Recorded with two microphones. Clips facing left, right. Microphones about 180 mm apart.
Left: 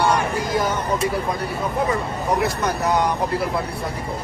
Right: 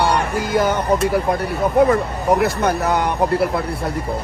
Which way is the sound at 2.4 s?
60° right (ahead or behind).